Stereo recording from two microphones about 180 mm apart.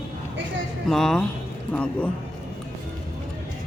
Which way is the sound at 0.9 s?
Centre (ahead or behind).